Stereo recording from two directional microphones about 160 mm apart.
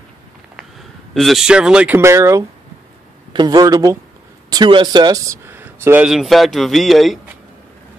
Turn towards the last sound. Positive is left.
turn(degrees=0)  # may be behind; listen again after turning